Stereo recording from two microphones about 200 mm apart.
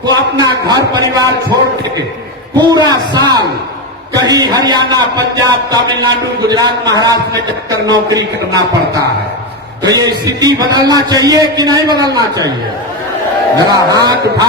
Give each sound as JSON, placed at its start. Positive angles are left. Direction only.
{"t": 0.0, "sound": "a man's voice", "side_deg": -20}
{"t": 2.6, "sound": "a man's voice", "side_deg": -20}
{"t": 9.8, "sound": "a man's voice", "side_deg": -20}
{"t": 13.7, "sound": "a man's voice", "side_deg": -20}